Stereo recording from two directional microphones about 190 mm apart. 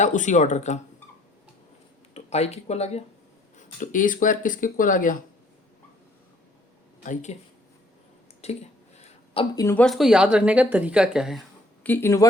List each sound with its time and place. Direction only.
0.0 s speech: 40° left (ahead or behind)
2.1 s speech: 35° left (ahead or behind)
7.0 s speech: 40° left (ahead or behind)
8.4 s speech: 35° left (ahead or behind)
9.0 s a sound: 30° left (ahead or behind)
9.6 s speech: 5° left (ahead or behind)
11.8 s speech: 10° left (ahead or behind)